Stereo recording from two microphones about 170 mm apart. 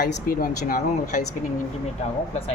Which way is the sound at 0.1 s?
60° left (ahead or behind).